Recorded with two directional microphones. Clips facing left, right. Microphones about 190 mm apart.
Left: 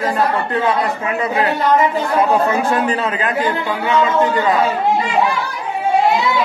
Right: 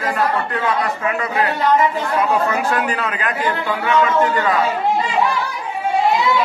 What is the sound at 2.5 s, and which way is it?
A man's voice, 25° left (ahead or behind).